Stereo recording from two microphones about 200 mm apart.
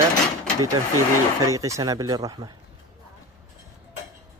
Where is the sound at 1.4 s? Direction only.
15° right (ahead or behind).